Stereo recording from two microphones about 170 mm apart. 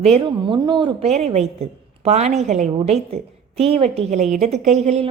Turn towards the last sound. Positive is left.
turn(degrees=-40)  # may be behind; listen again after turning